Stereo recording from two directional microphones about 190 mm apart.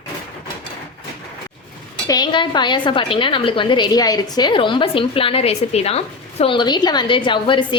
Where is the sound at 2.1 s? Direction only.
25° left (ahead or behind).